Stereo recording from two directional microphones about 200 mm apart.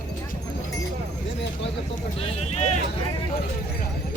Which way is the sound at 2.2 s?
35° left (ahead or behind).